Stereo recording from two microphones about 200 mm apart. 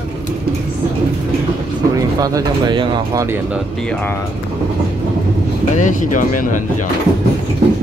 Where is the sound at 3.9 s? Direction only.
10° left (ahead or behind).